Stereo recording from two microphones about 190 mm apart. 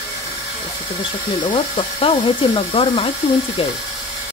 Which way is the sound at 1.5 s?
25° left (ahead or behind).